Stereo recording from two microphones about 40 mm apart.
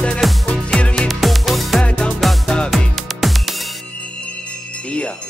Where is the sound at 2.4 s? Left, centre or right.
Centre.